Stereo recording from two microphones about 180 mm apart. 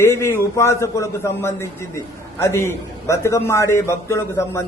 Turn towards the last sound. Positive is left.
turn(degrees=15)  # may be behind; listen again after turning